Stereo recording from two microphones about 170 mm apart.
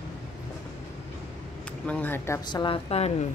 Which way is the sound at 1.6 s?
10° left (ahead or behind).